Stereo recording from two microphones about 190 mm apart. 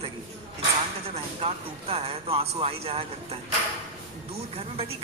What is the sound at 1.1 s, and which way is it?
A man's voice, 30° right (ahead or behind).